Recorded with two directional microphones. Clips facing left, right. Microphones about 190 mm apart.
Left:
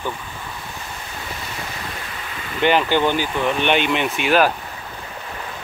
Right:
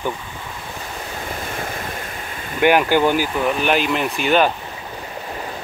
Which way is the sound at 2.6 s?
10° right (ahead or behind).